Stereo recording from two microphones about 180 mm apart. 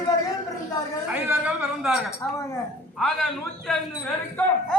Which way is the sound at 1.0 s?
10° right (ahead or behind).